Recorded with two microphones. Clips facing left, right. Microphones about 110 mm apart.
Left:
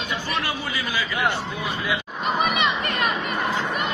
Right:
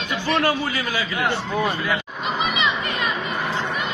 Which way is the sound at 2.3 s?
55° left (ahead or behind).